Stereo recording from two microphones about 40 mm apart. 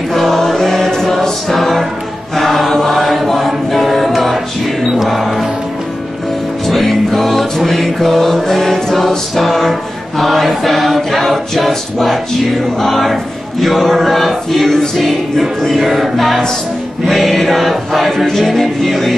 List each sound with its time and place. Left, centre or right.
0.1 s choir: centre
4.8 s music: centre
6.7 s music: centre
11.0 s a capella: centre
12.7 s a sound: centre
15.6 s music: centre
17.0 s choir: centre